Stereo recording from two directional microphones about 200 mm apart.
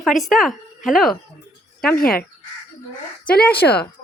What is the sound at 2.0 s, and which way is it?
Speech, 50° left (ahead or behind).